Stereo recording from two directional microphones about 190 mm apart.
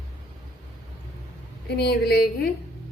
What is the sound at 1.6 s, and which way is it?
Speech, 60° left (ahead or behind).